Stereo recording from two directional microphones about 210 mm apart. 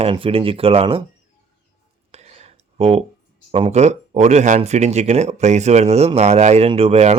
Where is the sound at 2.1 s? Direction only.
30° right (ahead or behind).